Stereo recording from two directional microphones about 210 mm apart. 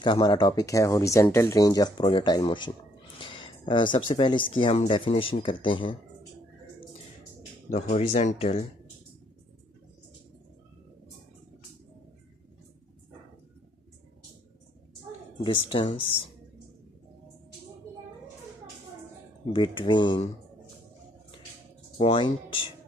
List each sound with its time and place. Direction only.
0.0 s speech: 20° left (ahead or behind)
3.2 s a sound: 25° left (ahead or behind)
4.1 s speech: 25° left (ahead or behind)
7.7 s speech: 30° left (ahead or behind)
15.4 s speech: 25° left (ahead or behind)
19.5 s speech: 20° left (ahead or behind)
21.9 s speech: 25° left (ahead or behind)